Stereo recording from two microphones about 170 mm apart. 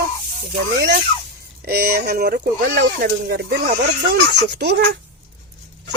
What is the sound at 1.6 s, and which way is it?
Speech, 65° right (ahead or behind).